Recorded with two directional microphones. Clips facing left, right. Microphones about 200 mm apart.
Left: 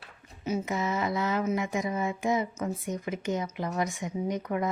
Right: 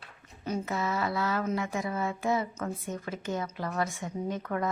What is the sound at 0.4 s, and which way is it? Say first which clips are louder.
A woman's voice: left 2 dB; 15° left (ahead or behind).